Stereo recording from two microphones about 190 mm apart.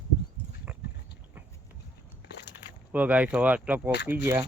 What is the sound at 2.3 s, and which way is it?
Biting, 65° left (ahead or behind).